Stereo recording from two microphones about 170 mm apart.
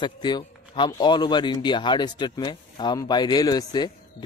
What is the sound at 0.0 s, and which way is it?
Speech, 25° left (ahead or behind).